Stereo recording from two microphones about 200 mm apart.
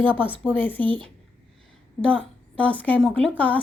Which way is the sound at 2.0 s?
5° left (ahead or behind).